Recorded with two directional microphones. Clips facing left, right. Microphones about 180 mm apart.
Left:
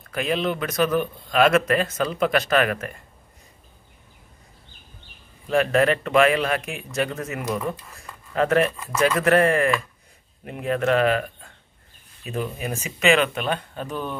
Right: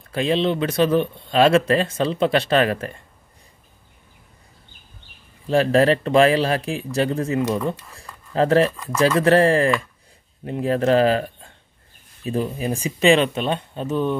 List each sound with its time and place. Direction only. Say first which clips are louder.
0.1 s a man's voice: right 4 dB; 30° right (ahead or behind)
5.5 s a man's voice: right 3 dB; 30° right (ahead or behind)